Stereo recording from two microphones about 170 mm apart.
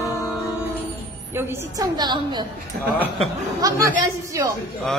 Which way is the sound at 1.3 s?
15° right (ahead or behind).